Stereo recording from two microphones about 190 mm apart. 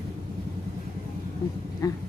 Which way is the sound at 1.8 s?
20° left (ahead or behind).